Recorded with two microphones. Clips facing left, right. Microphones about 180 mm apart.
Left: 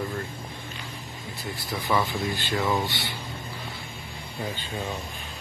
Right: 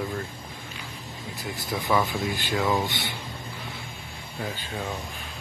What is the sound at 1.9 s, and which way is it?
Speech, centre (ahead or behind).